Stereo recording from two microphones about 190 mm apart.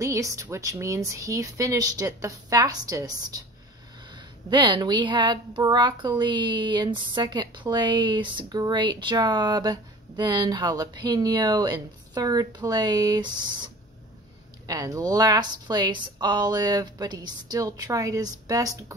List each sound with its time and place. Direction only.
0.0 s a woman's voice: 15° right (ahead or behind)
14.7 s speech: 20° right (ahead or behind)